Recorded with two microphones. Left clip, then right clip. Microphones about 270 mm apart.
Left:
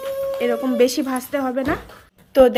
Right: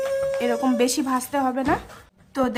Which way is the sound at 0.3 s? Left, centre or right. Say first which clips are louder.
Left 7 dB; centre.